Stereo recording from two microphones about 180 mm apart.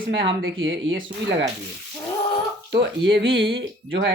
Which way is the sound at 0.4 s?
90° right.